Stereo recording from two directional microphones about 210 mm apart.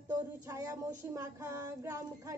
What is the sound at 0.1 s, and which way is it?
A woman's voice, 15° right (ahead or behind).